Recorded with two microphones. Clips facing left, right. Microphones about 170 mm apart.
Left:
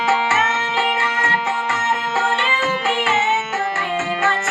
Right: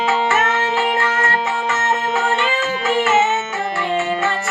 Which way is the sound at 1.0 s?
50° right (ahead or behind).